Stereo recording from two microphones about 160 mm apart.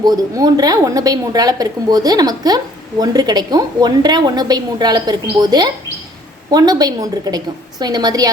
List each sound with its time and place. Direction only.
0.0 s a woman's voice: 25° right (ahead or behind)